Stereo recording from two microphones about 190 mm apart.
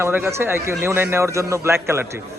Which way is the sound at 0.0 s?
10° right (ahead or behind).